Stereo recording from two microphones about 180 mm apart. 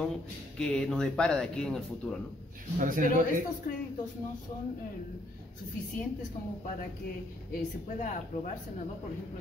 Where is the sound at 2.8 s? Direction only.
50° right (ahead or behind).